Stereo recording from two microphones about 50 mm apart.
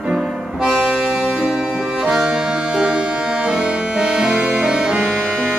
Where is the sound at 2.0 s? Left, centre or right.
Centre.